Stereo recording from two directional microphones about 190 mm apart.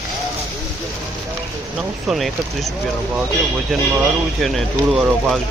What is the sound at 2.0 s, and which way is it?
Speech, centre (ahead or behind).